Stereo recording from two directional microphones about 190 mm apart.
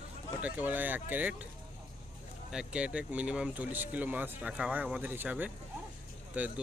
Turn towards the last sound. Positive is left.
turn(degrees=-5)  # may be behind; listen again after turning